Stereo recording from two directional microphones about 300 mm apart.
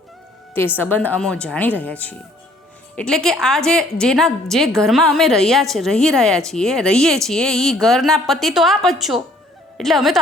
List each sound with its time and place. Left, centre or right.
0.8 s a woman's voice: centre